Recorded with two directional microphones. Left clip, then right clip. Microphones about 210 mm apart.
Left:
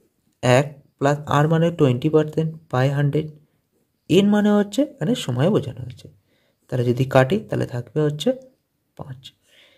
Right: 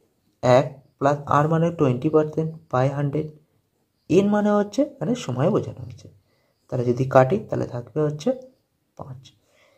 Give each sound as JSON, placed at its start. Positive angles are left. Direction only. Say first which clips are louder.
{"t": 0.4, "sound": "speech", "louder": "right 1 dB", "side_deg": 40}